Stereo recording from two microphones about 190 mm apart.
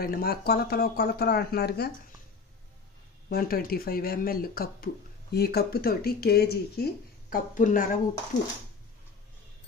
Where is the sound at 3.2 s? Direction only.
50° left (ahead or behind).